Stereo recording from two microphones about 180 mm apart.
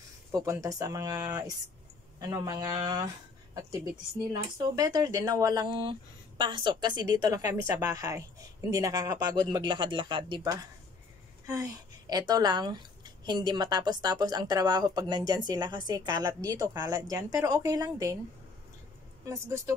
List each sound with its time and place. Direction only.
0.3 s speech: 20° right (ahead or behind)
4.3 s speech: 20° right (ahead or behind)
19.2 s speech: 15° right (ahead or behind)